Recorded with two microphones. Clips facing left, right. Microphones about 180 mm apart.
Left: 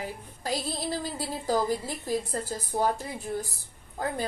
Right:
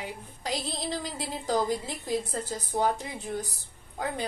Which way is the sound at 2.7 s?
10° left (ahead or behind).